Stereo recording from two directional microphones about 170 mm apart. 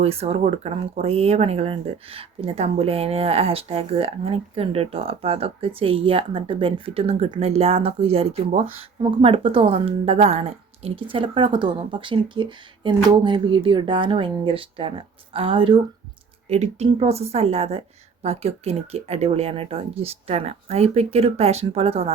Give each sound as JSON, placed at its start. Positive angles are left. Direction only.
{"t": 0.0, "sound": "speech", "side_deg": -35}
{"t": 16.5, "sound": "speech", "side_deg": -40}